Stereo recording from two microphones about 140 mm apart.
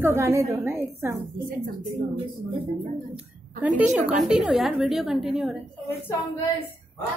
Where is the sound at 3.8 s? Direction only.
10° right (ahead or behind).